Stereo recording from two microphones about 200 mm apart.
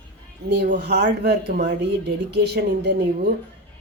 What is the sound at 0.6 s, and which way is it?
Speech, 40° right (ahead or behind).